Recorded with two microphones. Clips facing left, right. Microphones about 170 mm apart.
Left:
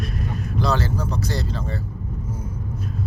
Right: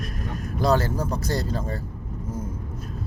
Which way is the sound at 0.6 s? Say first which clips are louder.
Right 2 dB; 50° right (ahead or behind).